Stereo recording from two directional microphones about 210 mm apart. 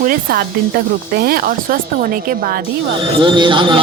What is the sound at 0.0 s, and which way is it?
Speech, 45° right (ahead or behind).